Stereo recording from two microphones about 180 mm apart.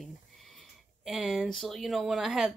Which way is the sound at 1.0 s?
Centre (ahead or behind).